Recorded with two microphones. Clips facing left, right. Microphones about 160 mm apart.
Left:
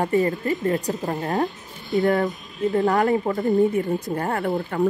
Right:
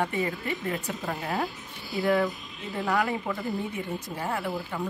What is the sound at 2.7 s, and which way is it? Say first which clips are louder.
Speech: left 7 dB; 45° left (ahead or behind).